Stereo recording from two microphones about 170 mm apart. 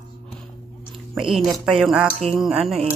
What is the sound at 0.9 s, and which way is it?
Speech, centre (ahead or behind).